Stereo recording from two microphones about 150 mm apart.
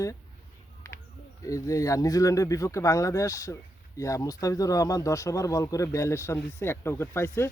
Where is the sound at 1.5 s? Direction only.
20° left (ahead or behind).